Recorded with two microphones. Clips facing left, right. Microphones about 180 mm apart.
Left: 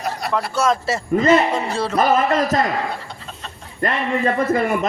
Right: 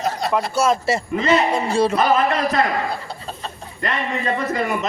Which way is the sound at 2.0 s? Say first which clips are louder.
Left 1 dB; 45° left (ahead or behind).